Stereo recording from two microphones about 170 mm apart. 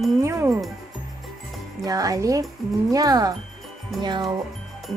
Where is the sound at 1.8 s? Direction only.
20° right (ahead or behind).